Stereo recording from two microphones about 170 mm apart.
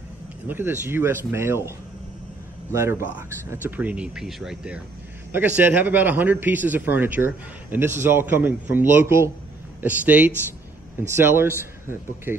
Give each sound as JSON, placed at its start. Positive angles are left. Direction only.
{"t": 0.5, "sound": "a man's voice", "side_deg": -10}